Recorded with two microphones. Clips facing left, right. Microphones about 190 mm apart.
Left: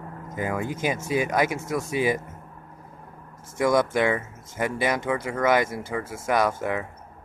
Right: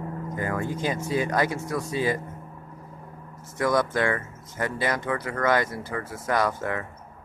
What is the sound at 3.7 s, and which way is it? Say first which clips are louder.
Speech: left 2 dB; 20° left (ahead or behind).